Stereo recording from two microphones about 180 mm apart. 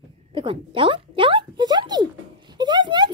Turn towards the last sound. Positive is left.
turn(degrees=-25)  # may be behind; listen again after turning